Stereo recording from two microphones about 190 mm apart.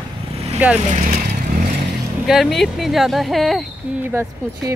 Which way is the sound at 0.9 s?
40° right (ahead or behind).